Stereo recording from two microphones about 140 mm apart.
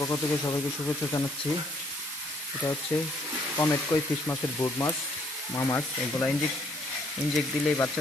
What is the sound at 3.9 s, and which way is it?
Speech, 25° left (ahead or behind).